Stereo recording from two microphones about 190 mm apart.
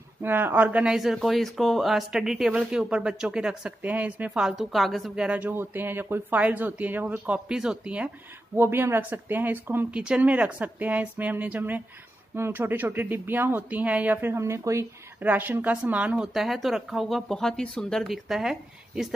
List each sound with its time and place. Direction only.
0.2 s speech: 10° right (ahead or behind)